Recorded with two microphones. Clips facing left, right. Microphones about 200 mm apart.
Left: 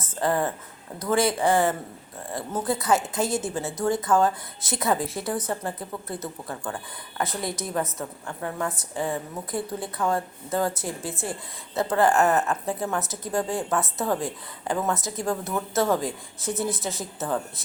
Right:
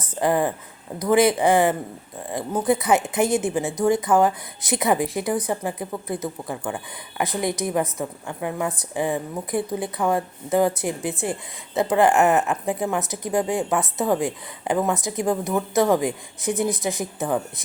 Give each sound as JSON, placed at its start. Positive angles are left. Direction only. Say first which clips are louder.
{"t": 0.0, "sound": "a woman's voice", "louder": "right 4 dB", "side_deg": -15}